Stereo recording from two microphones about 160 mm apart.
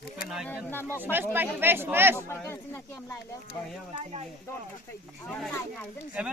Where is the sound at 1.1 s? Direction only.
15° right (ahead or behind).